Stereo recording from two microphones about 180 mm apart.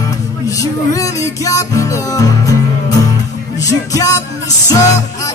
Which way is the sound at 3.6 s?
20° left (ahead or behind).